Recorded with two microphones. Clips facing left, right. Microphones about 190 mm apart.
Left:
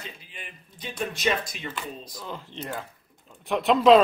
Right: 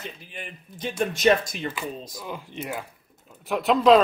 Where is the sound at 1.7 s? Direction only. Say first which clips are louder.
Right 3 dB; 10° right (ahead or behind).